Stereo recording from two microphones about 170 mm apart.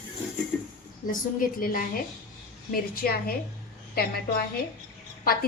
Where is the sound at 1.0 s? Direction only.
55° left (ahead or behind).